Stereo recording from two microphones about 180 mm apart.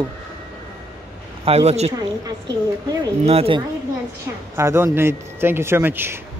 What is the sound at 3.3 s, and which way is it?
Speech, 35° right (ahead or behind).